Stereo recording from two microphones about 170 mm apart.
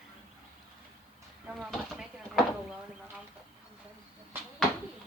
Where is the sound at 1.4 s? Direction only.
5° right (ahead or behind).